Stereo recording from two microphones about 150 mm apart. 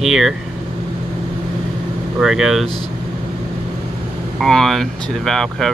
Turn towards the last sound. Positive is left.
turn(degrees=5)  # may be behind; listen again after turning